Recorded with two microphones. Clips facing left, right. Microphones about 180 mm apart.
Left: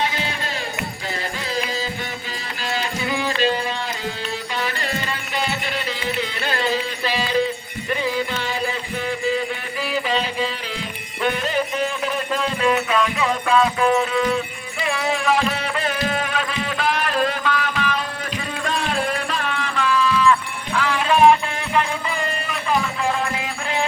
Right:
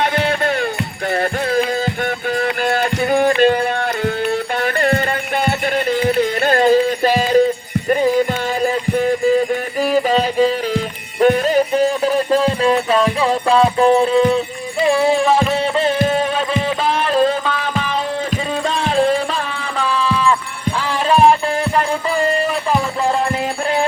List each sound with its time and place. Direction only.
0.0 s music: 60° right (ahead or behind); by 19.4 s 30° right (ahead or behind)
19.9 s a sound: 30° right (ahead or behind)
20.7 s music: 30° right (ahead or behind)